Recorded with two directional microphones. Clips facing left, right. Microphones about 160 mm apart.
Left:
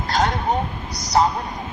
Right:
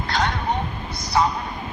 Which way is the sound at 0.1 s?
45° left (ahead or behind).